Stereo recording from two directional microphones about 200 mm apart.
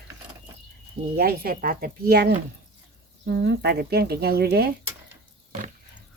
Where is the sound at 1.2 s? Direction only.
50° right (ahead or behind).